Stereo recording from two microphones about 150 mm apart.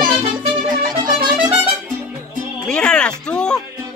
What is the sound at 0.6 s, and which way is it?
Music, 30° right (ahead or behind).